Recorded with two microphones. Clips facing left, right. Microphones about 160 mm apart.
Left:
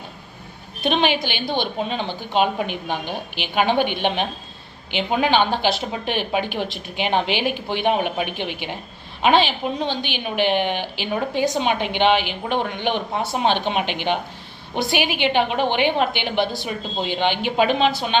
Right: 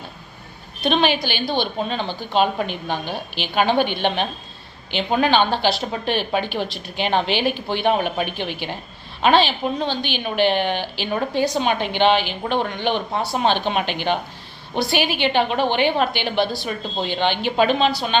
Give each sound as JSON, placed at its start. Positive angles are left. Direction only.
{"t": 0.8, "sound": "a woman's voice", "side_deg": 15}